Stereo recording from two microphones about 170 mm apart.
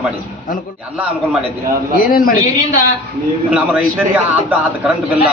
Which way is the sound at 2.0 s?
55° left (ahead or behind).